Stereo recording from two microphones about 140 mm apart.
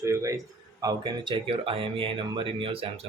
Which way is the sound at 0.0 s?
20° right (ahead or behind).